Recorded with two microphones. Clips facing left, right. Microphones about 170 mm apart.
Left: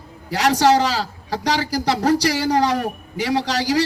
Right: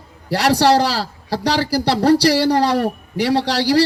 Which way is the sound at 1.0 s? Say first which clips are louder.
Right 2 dB; 35° right (ahead or behind).